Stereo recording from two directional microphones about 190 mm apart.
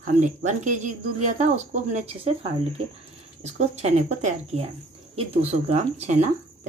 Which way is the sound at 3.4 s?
35° right (ahead or behind).